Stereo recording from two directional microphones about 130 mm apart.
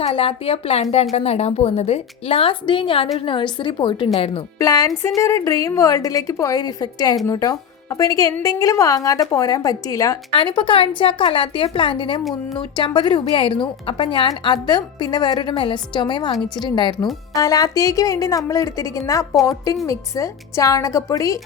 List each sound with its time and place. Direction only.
0.0 s a woman's voice: 45° left (ahead or behind)
4.5 s a woman's voice: 25° left (ahead or behind)
10.3 s a woman's voice: 40° left (ahead or behind)